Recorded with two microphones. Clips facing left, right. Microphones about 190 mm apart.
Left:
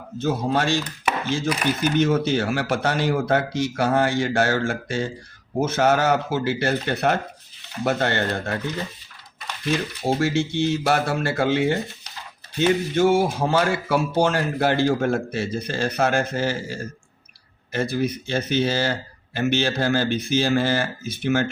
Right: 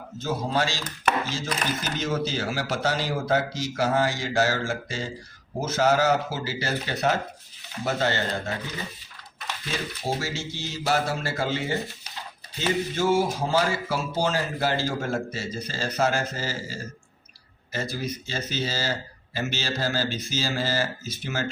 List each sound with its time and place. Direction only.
0.2 s a man's voice: 60° left (ahead or behind)
10.2 s a man's voice: 60° left (ahead or behind)